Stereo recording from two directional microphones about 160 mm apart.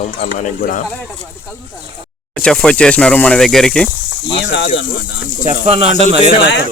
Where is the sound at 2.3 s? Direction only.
5° left (ahead or behind).